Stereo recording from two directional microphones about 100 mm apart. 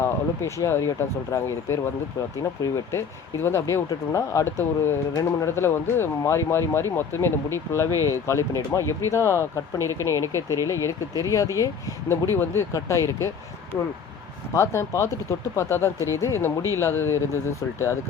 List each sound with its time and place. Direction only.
0.0 s speech: 30° left (ahead or behind)
7.9 s speech: 35° right (ahead or behind)
8.1 s speech: 30° left (ahead or behind)
14.5 s speech: 30° left (ahead or behind)